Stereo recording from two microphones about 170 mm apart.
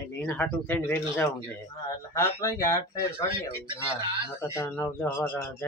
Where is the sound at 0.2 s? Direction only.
10° left (ahead or behind).